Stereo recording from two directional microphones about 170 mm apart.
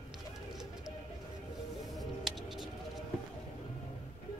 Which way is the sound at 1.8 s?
Centre (ahead or behind).